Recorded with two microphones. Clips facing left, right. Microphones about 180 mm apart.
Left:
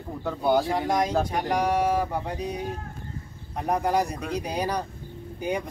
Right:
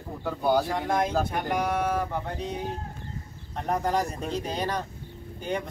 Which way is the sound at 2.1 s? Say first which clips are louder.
Left 2 dB; 15° left (ahead or behind).